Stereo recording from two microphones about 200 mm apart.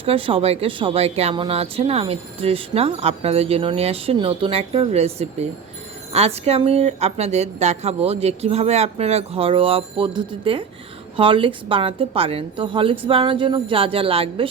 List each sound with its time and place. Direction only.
0.0 s a woman's voice: 25° right (ahead or behind)